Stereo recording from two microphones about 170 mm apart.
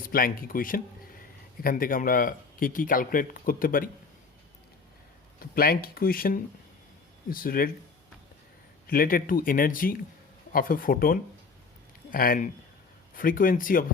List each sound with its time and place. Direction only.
0.1 s speech: 60° left (ahead or behind)
5.4 s speech: 60° left (ahead or behind)
8.9 s speech: 60° left (ahead or behind)